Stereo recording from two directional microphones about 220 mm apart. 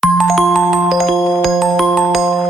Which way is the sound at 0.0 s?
Centre (ahead or behind).